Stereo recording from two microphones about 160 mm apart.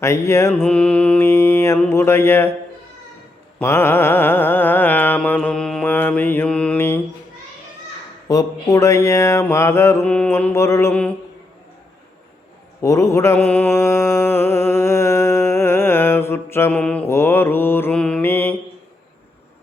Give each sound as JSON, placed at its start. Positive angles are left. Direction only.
{"t": 0.0, "sound": "mantra", "side_deg": 15}
{"t": 3.6, "sound": "mantra", "side_deg": 15}
{"t": 8.3, "sound": "mantra", "side_deg": 20}
{"t": 12.8, "sound": "mantra", "side_deg": 20}